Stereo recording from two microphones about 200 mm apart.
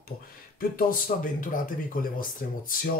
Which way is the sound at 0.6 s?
45° left (ahead or behind).